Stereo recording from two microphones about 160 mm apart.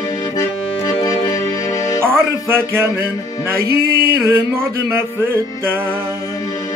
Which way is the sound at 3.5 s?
75° right (ahead or behind).